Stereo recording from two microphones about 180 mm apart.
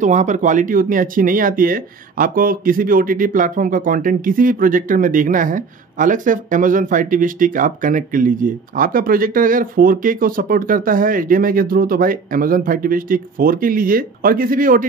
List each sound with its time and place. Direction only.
0.0 s speech: 40° right (ahead or behind)